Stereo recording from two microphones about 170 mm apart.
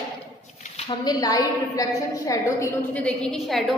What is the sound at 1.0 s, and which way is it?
A woman's voice, 25° left (ahead or behind).